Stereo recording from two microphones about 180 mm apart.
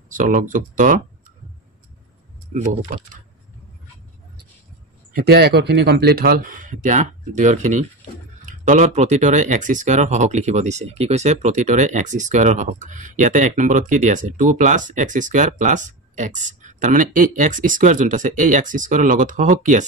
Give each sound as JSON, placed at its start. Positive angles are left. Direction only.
{"t": 0.1, "sound": "speech", "side_deg": -50}
{"t": 2.5, "sound": "speech", "side_deg": -45}
{"t": 5.1, "sound": "speech", "side_deg": -60}